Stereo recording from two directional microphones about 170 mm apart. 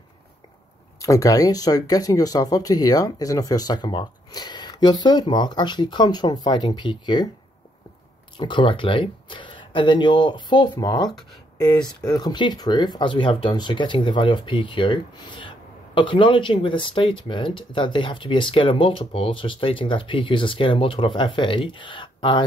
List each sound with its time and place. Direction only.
0.9 s speech: 20° left (ahead or behind)
8.4 s speech: 25° left (ahead or behind)
12.1 s speech: 25° left (ahead or behind)